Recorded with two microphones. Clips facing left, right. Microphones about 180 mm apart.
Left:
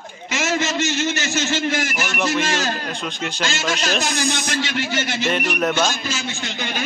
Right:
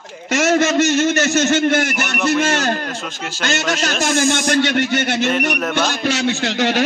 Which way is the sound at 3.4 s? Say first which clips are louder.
Right 5 dB; 60° right (ahead or behind).